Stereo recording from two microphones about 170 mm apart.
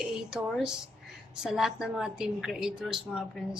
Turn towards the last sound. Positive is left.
turn(degrees=-5)  # may be behind; listen again after turning